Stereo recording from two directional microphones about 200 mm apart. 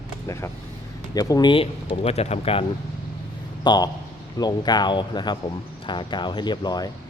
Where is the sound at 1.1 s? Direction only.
20° left (ahead or behind).